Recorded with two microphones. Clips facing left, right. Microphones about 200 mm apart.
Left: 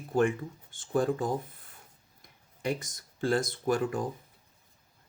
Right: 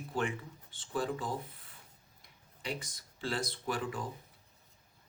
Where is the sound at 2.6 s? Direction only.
45° left (ahead or behind).